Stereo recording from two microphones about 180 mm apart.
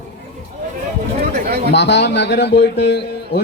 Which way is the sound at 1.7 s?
75° left (ahead or behind).